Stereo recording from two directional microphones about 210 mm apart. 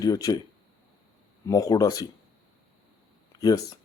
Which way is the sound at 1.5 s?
15° left (ahead or behind).